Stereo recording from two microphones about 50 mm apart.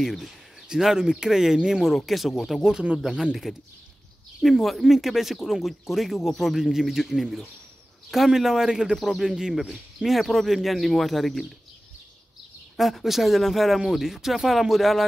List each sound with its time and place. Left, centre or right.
0.0 s speech: centre
2.6 s speech: centre
4.4 s speech: centre
9.6 s speech: centre
10.0 s speech: centre
12.7 s speech: centre